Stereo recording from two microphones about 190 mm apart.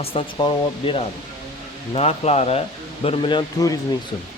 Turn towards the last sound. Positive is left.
turn(degrees=25)  # may be behind; listen again after turning